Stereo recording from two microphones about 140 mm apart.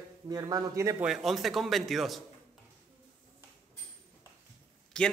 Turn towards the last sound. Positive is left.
turn(degrees=5)  # may be behind; listen again after turning